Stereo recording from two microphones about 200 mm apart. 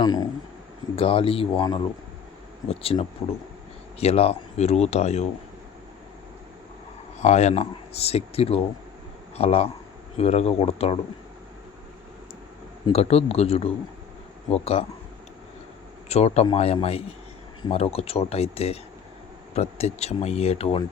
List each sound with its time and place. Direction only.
0.0 s speech: 20° left (ahead or behind)
7.2 s speech: 35° left (ahead or behind)
12.9 s speech: 30° left (ahead or behind)
16.0 s speech: 35° left (ahead or behind)